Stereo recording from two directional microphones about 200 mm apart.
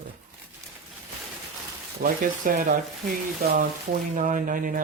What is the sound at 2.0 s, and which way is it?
Speech, 45° right (ahead or behind).